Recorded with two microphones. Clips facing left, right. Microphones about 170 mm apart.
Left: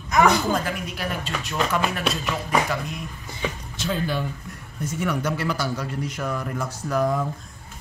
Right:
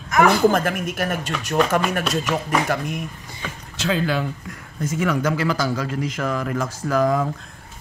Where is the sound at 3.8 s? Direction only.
90° right.